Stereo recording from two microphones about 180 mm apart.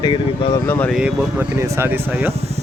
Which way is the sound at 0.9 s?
10° right (ahead or behind).